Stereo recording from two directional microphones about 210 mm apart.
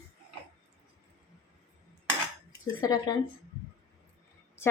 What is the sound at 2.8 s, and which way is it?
Speech, 15° left (ahead or behind).